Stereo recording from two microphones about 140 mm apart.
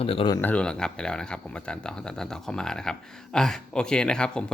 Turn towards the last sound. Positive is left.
turn(degrees=5)  # may be behind; listen again after turning